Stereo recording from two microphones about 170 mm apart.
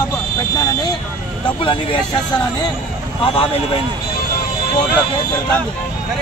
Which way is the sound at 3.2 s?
35° left (ahead or behind).